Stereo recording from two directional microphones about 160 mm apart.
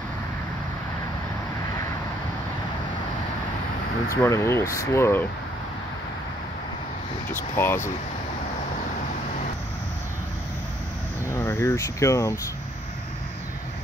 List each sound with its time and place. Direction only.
4.1 s speech: 20° left (ahead or behind)
7.5 s speech: 15° left (ahead or behind)
11.3 s speech: 15° left (ahead or behind)